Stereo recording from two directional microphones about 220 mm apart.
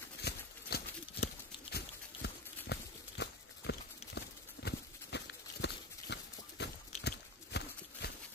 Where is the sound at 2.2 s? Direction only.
50° left (ahead or behind).